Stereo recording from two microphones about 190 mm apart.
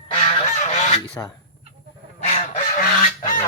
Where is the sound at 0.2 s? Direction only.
35° left (ahead or behind).